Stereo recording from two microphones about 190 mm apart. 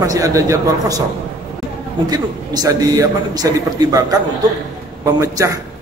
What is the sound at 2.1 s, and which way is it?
A man's voice, 20° right (ahead or behind).